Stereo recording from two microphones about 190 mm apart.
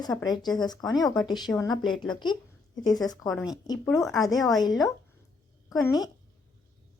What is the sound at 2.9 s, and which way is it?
Speech, 20° left (ahead or behind).